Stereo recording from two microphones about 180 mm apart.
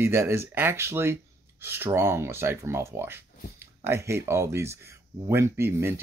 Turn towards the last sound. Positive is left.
turn(degrees=-15)  # may be behind; listen again after turning